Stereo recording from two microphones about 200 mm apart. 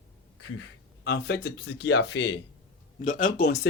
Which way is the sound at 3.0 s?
40° left (ahead or behind).